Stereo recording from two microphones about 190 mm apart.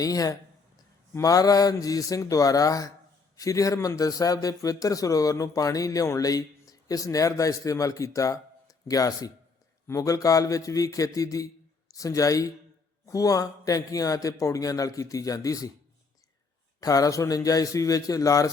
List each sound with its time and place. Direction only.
0.0 s a man's voice: 20° left (ahead or behind)
16.8 s a man's voice: 20° left (ahead or behind)